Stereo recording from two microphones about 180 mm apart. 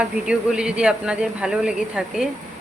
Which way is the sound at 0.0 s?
5° right (ahead or behind).